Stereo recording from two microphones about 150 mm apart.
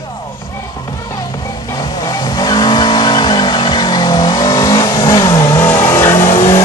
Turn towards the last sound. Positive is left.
turn(degrees=20)  # may be behind; listen again after turning